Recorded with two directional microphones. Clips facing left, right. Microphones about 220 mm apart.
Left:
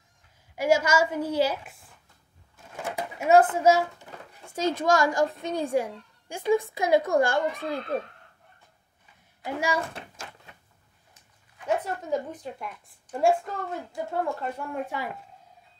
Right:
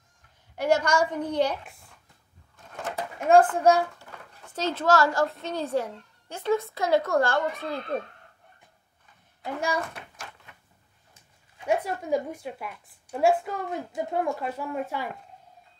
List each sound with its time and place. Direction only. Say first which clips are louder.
0.6 s a woman's voice: left 1 dB; 10° left (ahead or behind)
2.5 s drawer open or close: even; 10° left (ahead or behind)
3.5 s a woman's voice: even; 5° left (ahead or behind)
9.4 s a woman's voice: left 1 dB; 10° left (ahead or behind)
9.8 s a sound: even; 25° left (ahead or behind)
11.6 s a woman's voice: right 2 dB; 10° right (ahead or behind)
14.6 s speech: right 1 dB; centre (ahead or behind)